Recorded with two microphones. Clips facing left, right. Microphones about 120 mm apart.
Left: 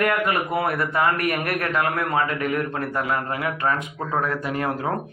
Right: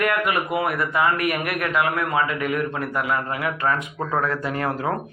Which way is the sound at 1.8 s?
20° right (ahead or behind).